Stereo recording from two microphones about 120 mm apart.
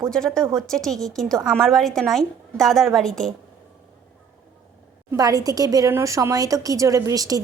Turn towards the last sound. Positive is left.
turn(degrees=-30)  # may be behind; listen again after turning